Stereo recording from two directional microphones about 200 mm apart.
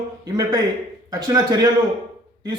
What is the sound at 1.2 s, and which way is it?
Speech, 15° right (ahead or behind).